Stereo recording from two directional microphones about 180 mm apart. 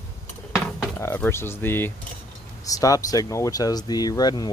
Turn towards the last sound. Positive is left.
turn(degrees=20)  # may be behind; listen again after turning